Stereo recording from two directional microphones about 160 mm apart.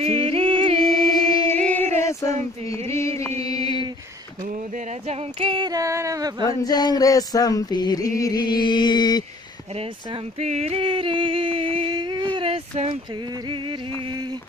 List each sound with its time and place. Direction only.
0.0 s music: 40° right (ahead or behind)
0.8 s music: 25° left (ahead or behind)
1.6 s female singing: 10° left (ahead or behind)
2.0 s a sound: 20° left (ahead or behind)
5.0 s a sound: 40° right (ahead or behind); by 6.3 s 20° right (ahead or behind)
6.4 s music: 25° left (ahead or behind)
10.4 s singing: 40° right (ahead or behind)